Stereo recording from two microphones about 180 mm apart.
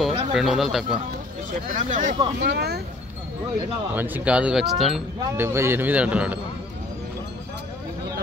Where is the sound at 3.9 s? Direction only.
10° right (ahead or behind).